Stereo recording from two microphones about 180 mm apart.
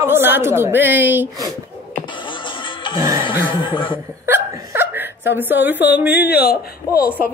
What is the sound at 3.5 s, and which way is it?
Speech, 25° left (ahead or behind).